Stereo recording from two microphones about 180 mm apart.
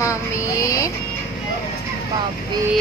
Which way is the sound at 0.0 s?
15° left (ahead or behind).